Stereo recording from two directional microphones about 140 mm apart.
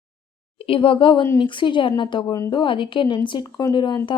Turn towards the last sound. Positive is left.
turn(degrees=35)  # may be behind; listen again after turning